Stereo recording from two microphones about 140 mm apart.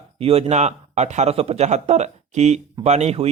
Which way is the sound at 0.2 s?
45° right (ahead or behind).